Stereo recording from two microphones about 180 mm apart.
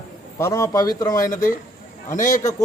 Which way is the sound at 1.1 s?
45° left (ahead or behind).